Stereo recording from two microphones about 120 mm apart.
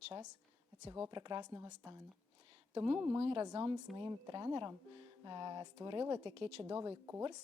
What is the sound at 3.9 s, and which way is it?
Speech, 40° right (ahead or behind).